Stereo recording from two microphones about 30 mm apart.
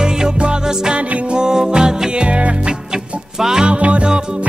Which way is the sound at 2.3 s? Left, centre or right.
Right.